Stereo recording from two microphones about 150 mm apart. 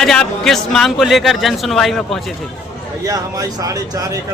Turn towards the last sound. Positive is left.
turn(degrees=-25)  # may be behind; listen again after turning